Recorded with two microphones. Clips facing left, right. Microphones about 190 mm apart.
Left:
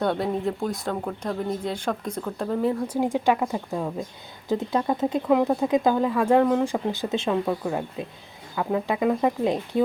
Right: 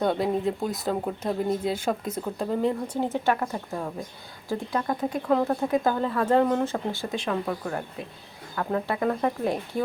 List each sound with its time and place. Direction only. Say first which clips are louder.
0.0 s speech: even; centre (ahead or behind)
2.9 s speech: left 3 dB; 10° left (ahead or behind)
6.7 s speech: left 4 dB; 15° left (ahead or behind)